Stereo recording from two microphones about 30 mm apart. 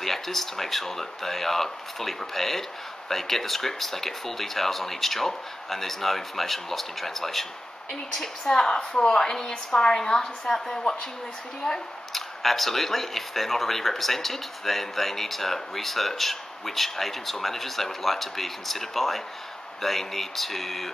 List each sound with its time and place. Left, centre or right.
0.0 s a woman's voice: centre